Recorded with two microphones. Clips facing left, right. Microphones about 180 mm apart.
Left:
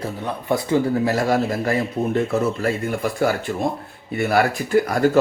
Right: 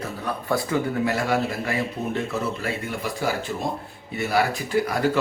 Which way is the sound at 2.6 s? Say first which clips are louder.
Left 6 dB; 50° left (ahead or behind).